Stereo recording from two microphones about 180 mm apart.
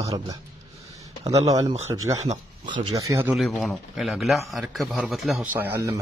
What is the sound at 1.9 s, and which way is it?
Speech, 25° right (ahead or behind).